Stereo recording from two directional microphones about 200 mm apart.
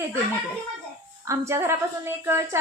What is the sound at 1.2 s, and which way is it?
A woman's voice, 15° right (ahead or behind).